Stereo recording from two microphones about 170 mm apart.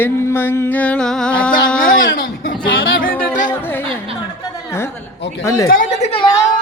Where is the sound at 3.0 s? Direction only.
55° left (ahead or behind).